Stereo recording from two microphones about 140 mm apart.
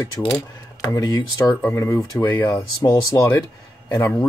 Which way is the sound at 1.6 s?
15° left (ahead or behind).